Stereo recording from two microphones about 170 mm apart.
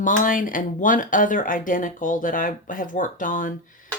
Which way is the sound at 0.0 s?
50° left (ahead or behind).